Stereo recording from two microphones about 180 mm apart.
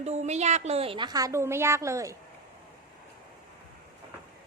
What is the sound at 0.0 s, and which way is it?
A woman's voice, 40° right (ahead or behind).